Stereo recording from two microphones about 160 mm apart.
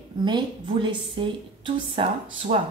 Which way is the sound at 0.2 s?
30° right (ahead or behind).